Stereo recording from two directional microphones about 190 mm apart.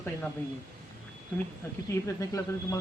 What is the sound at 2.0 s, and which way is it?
Speech, 15° left (ahead or behind).